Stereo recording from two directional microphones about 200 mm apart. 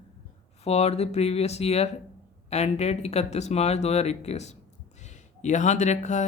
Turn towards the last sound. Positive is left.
turn(degrees=35)  # may be behind; listen again after turning